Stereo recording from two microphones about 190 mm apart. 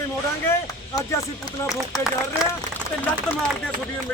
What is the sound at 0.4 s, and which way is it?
Speech, 15° left (ahead or behind).